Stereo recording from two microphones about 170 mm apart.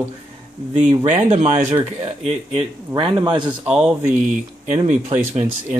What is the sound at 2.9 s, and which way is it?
Speech, 25° right (ahead or behind).